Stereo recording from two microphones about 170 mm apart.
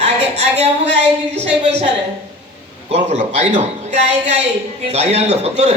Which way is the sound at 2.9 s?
40° right (ahead or behind).